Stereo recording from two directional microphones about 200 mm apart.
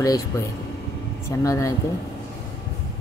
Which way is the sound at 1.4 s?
15° left (ahead or behind).